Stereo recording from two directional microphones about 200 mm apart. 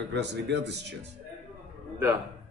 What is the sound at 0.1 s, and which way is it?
Speech, 60° right (ahead or behind).